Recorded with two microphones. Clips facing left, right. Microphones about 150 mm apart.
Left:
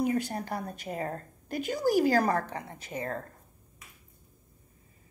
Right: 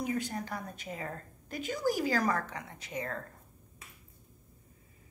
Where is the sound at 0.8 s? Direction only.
40° left (ahead or behind).